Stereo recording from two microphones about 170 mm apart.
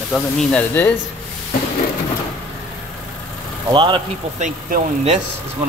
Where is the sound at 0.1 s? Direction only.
5° left (ahead or behind).